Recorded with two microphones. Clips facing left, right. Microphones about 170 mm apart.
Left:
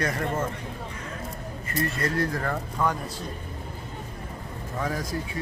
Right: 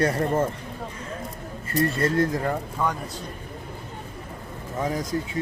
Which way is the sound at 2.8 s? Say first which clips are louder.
Left 1 dB; 5° right (ahead or behind).